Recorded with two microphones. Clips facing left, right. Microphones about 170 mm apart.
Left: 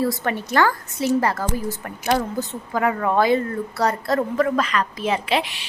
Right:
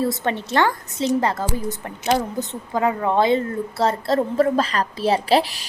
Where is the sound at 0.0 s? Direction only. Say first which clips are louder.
Even; 25° right (ahead or behind).